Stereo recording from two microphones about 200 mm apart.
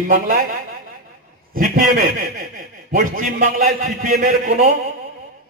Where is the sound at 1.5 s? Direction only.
45° right (ahead or behind).